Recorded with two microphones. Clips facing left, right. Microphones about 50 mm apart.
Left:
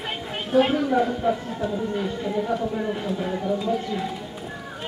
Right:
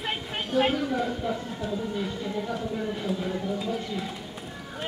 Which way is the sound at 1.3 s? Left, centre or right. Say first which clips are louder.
Left 7 dB; left.